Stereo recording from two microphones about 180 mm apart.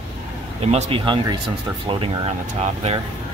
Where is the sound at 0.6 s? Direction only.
35° right (ahead or behind).